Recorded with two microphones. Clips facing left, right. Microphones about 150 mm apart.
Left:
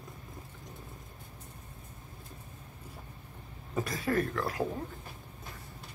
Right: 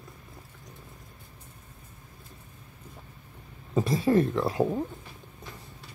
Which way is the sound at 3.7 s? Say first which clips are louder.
Right 8 dB; 25° right (ahead or behind).